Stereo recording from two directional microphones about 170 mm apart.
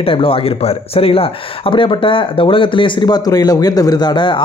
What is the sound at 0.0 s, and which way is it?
A man's voice, 30° left (ahead or behind).